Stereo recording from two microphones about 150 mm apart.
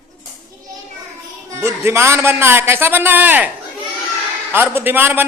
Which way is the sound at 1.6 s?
15° right (ahead or behind).